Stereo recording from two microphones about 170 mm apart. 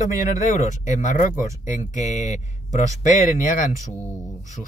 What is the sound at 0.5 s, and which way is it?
Speech, 50° left (ahead or behind).